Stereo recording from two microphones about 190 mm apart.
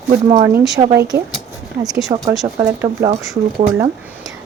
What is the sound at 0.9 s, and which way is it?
Speech, 15° right (ahead or behind).